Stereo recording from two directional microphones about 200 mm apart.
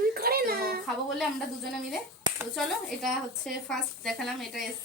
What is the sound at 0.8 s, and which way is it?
Speech, centre (ahead or behind).